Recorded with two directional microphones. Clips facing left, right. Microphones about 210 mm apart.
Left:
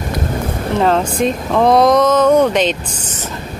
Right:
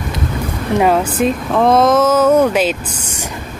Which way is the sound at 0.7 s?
10° right (ahead or behind).